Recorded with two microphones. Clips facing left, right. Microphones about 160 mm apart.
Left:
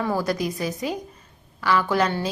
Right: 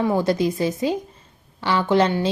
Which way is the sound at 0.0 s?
25° right (ahead or behind).